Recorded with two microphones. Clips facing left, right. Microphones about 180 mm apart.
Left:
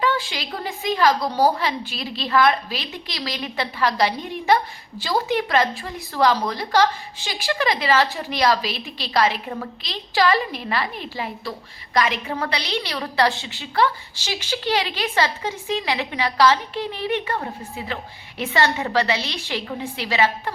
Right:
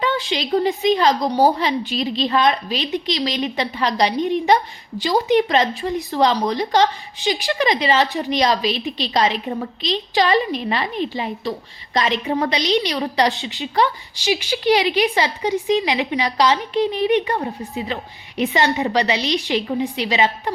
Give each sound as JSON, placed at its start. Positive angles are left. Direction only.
{"t": 0.0, "sound": "a woman's voice", "side_deg": -20}